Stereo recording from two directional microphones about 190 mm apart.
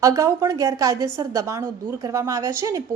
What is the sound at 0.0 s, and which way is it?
A woman's voice, 15° right (ahead or behind).